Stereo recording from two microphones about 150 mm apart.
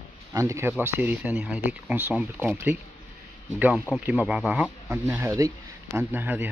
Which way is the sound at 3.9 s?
5° right (ahead or behind).